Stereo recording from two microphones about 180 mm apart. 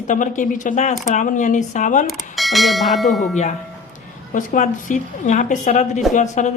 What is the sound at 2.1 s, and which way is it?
Bell, centre (ahead or behind).